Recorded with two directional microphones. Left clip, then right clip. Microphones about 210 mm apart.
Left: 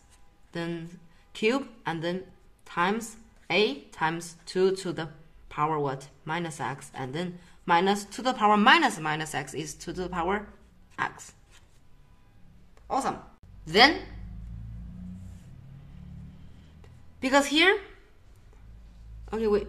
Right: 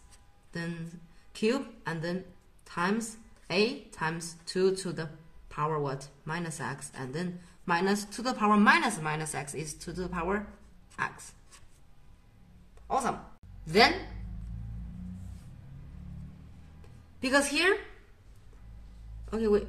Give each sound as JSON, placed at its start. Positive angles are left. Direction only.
{"t": 0.5, "sound": "a woman's voice", "side_deg": 35}
{"t": 11.0, "sound": "a sound", "side_deg": 30}
{"t": 12.8, "sound": "a woman's voice", "side_deg": 25}
{"t": 17.2, "sound": "a woman's voice", "side_deg": 35}